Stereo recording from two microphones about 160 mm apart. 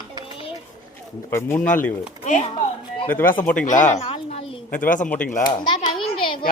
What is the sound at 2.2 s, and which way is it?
Speech, 50° left (ahead or behind).